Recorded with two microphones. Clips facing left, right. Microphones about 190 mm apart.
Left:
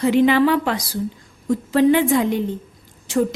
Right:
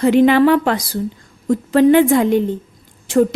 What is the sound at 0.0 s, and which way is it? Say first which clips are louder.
A woman's voice: right 4 dB; 55° right (ahead or behind).